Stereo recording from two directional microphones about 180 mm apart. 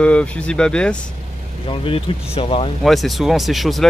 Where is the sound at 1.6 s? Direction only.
30° left (ahead or behind).